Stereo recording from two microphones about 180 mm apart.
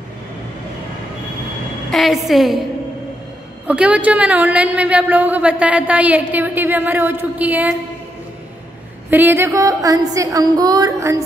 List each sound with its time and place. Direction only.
1.9 s a woman's voice: centre (ahead or behind)
3.6 s a woman's voice: 5° right (ahead or behind)
9.1 s a woman's voice: 10° right (ahead or behind)